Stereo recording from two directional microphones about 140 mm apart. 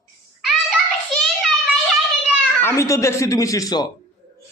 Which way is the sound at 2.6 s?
20° left (ahead or behind).